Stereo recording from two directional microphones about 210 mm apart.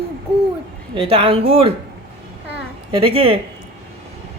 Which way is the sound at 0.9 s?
25° right (ahead or behind).